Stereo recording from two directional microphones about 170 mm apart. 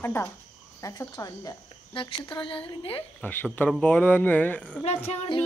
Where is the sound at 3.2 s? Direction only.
10° left (ahead or behind).